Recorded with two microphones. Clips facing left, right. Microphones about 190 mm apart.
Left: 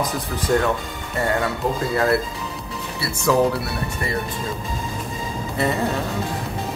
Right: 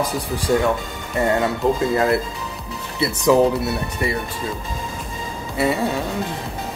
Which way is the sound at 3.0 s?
20° right (ahead or behind).